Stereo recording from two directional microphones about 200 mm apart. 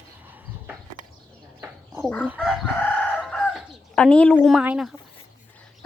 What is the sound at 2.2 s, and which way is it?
Chicken, 5° right (ahead or behind).